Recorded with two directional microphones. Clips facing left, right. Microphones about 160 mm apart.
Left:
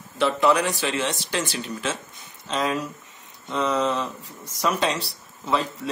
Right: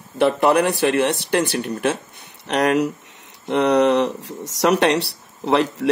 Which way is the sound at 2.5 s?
75° right (ahead or behind).